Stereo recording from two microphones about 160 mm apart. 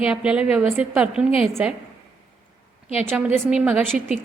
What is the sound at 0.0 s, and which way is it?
A woman's voice, 5° right (ahead or behind).